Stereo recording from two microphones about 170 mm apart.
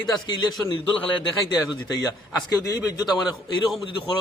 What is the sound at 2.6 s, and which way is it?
Speech, 20° left (ahead or behind).